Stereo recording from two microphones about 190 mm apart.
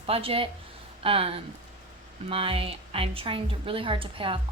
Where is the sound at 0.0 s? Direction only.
30° right (ahead or behind).